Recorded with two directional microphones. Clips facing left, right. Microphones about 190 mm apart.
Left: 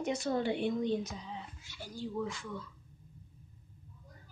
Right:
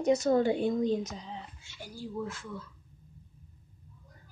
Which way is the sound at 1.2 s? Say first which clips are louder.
Right 1 dB; 25° right (ahead or behind).